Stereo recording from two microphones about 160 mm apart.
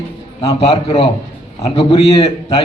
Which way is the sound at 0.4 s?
35° left (ahead or behind).